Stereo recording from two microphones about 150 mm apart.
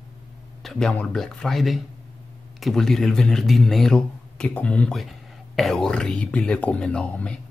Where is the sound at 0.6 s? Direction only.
5° left (ahead or behind).